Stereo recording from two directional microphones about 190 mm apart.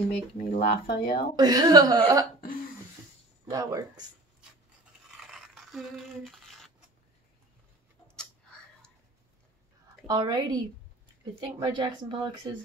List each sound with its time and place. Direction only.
0.1 s speech: 50° left (ahead or behind)
1.3 s a woman's voice: 20° right (ahead or behind)
3.4 s speech: 20° right (ahead or behind)
5.0 s a sound: centre (ahead or behind)
8.2 s a sound: 5° left (ahead or behind)
10.0 s a woman's voice: 20° right (ahead or behind)
11.6 s a woman's voice: 25° right (ahead or behind)